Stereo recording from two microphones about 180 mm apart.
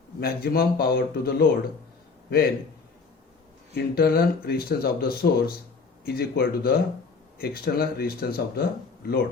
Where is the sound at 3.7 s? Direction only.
60° left (ahead or behind).